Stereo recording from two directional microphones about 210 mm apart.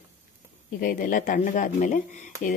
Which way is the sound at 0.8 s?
40° left (ahead or behind).